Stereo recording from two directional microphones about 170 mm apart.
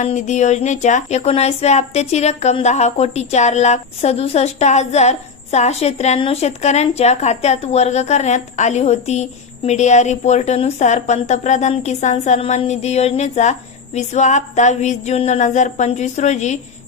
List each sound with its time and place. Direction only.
0.0 s a woman's voice: 45° left (ahead or behind)